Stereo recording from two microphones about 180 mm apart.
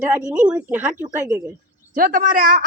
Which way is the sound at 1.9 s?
50° right (ahead or behind).